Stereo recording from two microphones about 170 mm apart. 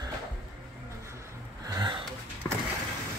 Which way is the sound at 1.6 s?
25° right (ahead or behind).